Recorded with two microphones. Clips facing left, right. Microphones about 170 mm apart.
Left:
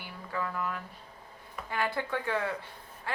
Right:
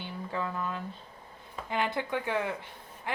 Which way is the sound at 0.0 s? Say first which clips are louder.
Right 2 dB; 25° right (ahead or behind).